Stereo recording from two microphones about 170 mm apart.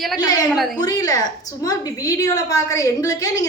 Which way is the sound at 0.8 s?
20° left (ahead or behind).